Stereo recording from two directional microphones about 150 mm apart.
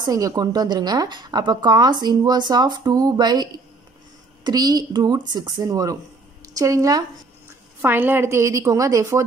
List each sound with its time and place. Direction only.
0.0 s a woman's voice: 25° right (ahead or behind)
7.8 s a woman's voice: 15° right (ahead or behind)